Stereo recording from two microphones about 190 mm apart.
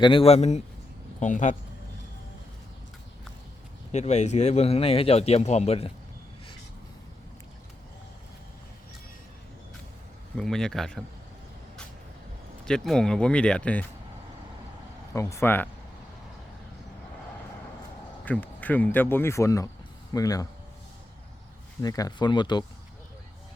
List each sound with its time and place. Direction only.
0.0 s speech: 30° left (ahead or behind)
3.9 s speech: 35° left (ahead or behind)
10.3 s speech: 5° left (ahead or behind)
12.6 s speech: 5° left (ahead or behind)
15.1 s speech: 15° left (ahead or behind)
18.3 s speech: 10° left (ahead or behind)
21.8 s speech: 20° left (ahead or behind)